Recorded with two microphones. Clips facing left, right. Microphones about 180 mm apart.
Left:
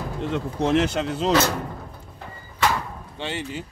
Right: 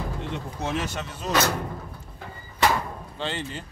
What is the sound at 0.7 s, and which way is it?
Speech, 85° left.